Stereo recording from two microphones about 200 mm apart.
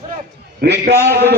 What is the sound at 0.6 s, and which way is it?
Speech, 55° right (ahead or behind).